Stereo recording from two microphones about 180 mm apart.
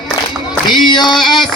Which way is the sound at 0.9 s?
25° left (ahead or behind).